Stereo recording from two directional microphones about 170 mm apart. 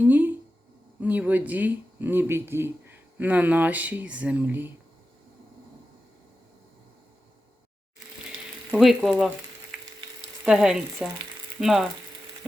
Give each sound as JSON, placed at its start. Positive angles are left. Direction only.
{"t": 0.0, "sound": "a sound", "side_deg": -10}
{"t": 0.9, "sound": "speech", "side_deg": -10}
{"t": 8.7, "sound": "frying", "side_deg": 0}